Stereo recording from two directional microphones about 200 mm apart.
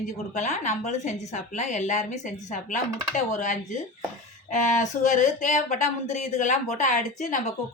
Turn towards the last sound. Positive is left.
turn(degrees=35)  # may be behind; listen again after turning